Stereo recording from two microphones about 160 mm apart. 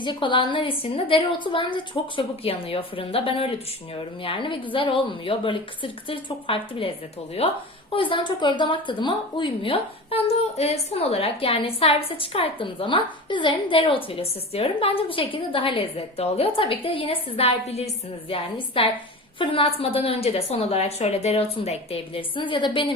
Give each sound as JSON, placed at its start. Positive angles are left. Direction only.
{"t": 0.0, "sound": "speech", "side_deg": 30}